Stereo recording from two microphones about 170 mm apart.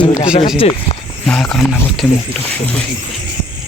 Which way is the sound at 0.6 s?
35° left (ahead or behind).